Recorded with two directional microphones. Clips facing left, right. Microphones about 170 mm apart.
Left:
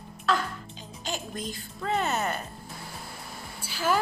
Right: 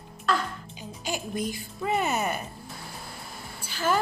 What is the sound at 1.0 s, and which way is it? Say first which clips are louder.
Speech: right 4 dB; 10° right (ahead or behind).